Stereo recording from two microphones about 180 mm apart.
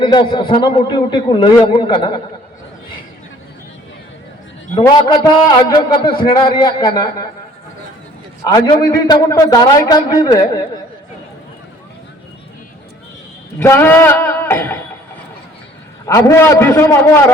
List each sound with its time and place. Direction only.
0.0 s a man's voice: 25° left (ahead or behind)
4.7 s a man's voice: 20° left (ahead or behind)
8.4 s a man's voice: 20° left (ahead or behind)
13.6 s a man's voice: 10° left (ahead or behind)
16.0 s a man's voice: 15° left (ahead or behind)